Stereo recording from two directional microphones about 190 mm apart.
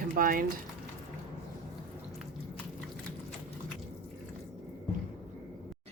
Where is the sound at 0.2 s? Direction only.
50° right (ahead or behind).